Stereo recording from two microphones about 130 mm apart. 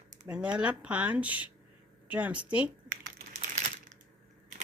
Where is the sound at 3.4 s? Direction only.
70° right (ahead or behind).